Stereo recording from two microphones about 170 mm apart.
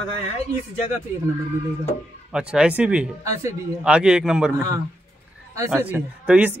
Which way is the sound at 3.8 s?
5° right (ahead or behind).